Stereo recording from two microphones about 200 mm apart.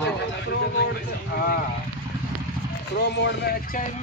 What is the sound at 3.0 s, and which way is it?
Speech, 60° left (ahead or behind).